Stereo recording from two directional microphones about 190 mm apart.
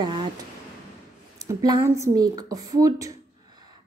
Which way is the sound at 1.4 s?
20° right (ahead or behind).